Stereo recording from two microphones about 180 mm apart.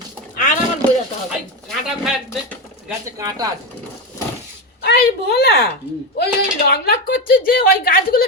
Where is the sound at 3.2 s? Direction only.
20° right (ahead or behind).